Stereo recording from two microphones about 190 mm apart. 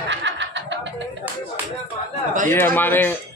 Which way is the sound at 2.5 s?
10° left (ahead or behind).